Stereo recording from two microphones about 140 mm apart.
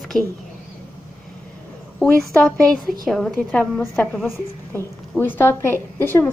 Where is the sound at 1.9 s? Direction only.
5° left (ahead or behind).